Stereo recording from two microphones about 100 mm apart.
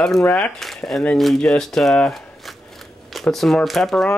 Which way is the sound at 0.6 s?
Centre (ahead or behind).